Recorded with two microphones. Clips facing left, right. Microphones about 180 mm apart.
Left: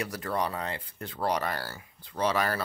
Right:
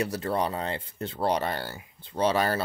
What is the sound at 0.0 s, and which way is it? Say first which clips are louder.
Speech: right 4 dB; 25° right (ahead or behind).